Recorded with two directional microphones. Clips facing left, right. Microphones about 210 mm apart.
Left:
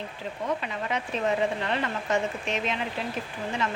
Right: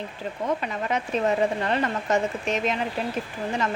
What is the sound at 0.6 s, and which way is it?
A woman's voice, 45° right (ahead or behind).